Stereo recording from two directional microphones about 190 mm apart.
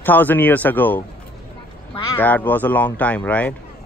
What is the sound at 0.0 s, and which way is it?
Speech, 10° left (ahead or behind).